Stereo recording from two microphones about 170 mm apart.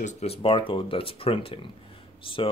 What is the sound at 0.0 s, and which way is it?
Speech, 35° left (ahead or behind).